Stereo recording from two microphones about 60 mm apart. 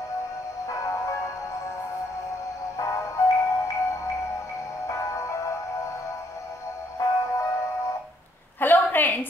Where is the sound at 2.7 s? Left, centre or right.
Left.